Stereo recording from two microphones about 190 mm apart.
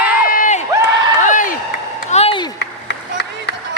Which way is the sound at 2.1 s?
35° left (ahead or behind).